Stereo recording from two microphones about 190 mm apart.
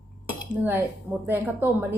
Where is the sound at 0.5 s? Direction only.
10° right (ahead or behind).